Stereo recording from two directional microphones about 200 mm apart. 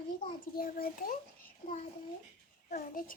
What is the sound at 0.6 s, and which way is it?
Speech, 45° left (ahead or behind).